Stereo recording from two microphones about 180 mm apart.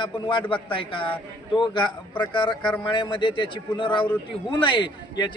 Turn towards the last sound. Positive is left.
turn(degrees=25)  # may be behind; listen again after turning